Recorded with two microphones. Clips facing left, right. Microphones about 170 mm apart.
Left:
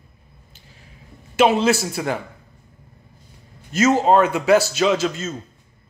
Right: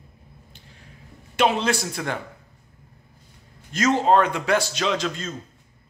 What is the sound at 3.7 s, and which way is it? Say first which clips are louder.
A man's voice: left 3 dB; 5° left (ahead or behind).